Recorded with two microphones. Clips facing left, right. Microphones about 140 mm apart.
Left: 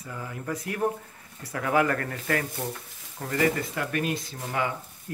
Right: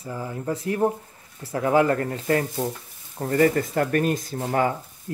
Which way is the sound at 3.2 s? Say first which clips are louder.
Right 6 dB; 40° right (ahead or behind).